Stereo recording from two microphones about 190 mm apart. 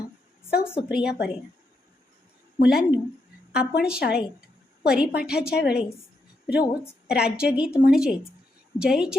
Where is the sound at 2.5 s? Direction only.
50° left (ahead or behind).